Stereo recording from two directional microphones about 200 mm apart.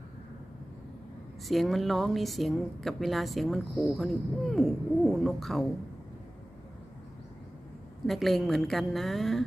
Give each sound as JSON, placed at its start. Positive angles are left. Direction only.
{"t": 1.5, "sound": "speech", "side_deg": 0}
{"t": 8.0, "sound": "speech", "side_deg": 0}